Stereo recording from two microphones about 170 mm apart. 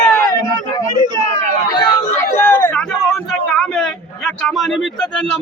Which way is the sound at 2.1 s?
15° left (ahead or behind).